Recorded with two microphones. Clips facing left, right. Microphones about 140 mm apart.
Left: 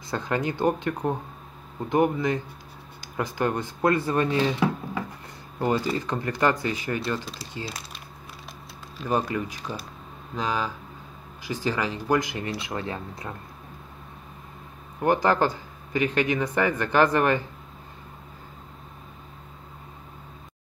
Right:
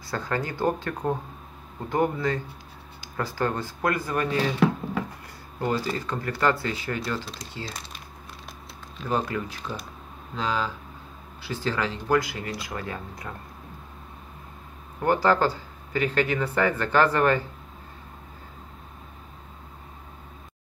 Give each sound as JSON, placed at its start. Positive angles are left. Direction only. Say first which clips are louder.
{"t": 0.1, "sound": "speech", "louder": "left 2 dB", "side_deg": 20}
{"t": 5.6, "sound": "speech", "louder": "left 2 dB", "side_deg": 15}
{"t": 7.2, "sound": "speech", "louder": "left 1 dB", "side_deg": 5}
{"t": 8.9, "sound": "speech", "louder": "left 1 dB", "side_deg": 10}
{"t": 15.0, "sound": "speech", "louder": "even", "side_deg": 15}